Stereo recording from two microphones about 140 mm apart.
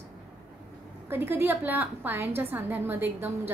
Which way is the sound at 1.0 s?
15° right (ahead or behind).